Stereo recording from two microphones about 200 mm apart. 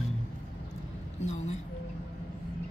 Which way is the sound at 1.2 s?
35° left (ahead or behind).